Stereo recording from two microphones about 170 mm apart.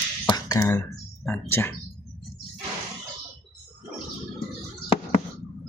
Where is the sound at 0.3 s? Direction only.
20° left (ahead or behind).